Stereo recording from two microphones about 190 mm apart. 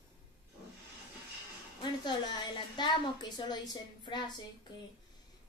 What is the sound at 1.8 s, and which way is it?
A woman's voice, 25° left (ahead or behind).